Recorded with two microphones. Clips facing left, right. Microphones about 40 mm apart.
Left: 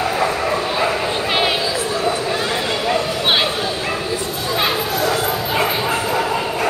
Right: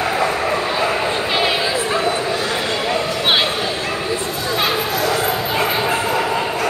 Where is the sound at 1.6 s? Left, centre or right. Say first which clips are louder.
Right 2 dB; right.